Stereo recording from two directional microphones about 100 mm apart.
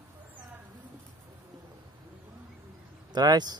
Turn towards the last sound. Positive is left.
turn(degrees=-40)  # may be behind; listen again after turning